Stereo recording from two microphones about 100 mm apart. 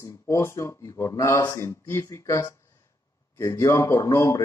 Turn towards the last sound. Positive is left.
turn(degrees=30)  # may be behind; listen again after turning